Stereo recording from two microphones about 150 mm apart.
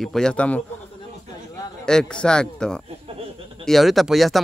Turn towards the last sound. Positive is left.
turn(degrees=0)  # may be behind; listen again after turning